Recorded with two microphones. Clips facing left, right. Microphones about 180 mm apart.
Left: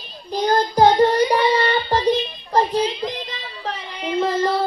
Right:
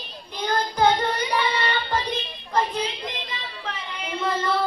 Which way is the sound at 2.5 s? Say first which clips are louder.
Left 6 dB; 40° left (ahead or behind).